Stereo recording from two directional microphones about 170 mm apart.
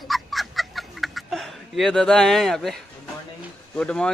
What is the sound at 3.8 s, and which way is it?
Speech, 5° left (ahead or behind).